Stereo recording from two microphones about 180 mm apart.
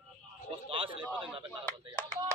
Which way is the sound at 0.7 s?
30° right (ahead or behind).